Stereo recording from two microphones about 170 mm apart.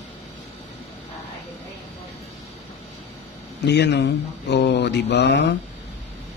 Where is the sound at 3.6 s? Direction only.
80° left.